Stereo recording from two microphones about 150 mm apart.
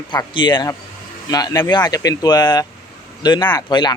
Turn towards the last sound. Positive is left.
turn(degrees=30)  # may be behind; listen again after turning